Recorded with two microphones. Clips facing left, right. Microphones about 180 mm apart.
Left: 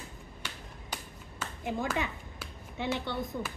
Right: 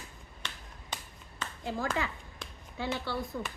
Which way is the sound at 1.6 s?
20° left (ahead or behind).